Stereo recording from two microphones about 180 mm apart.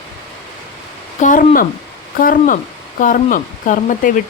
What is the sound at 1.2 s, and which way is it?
Speech, 50° left (ahead or behind).